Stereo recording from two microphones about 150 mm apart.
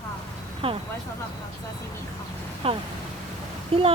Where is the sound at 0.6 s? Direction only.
40° right (ahead or behind).